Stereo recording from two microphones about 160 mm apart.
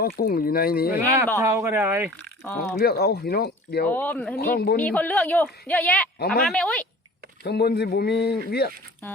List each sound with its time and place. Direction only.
0.2 s speech: 70° left (ahead or behind)
0.9 s speech: 20° right (ahead or behind)
2.4 s a woman's voice: 10° left (ahead or behind)
2.7 s a man's voice: 80° left
3.8 s a woman's voice: 10° left (ahead or behind)
4.4 s speech: 70° left (ahead or behind)
4.8 s a woman's voice: 10° left (ahead or behind)
7.4 s a man's voice: 85° left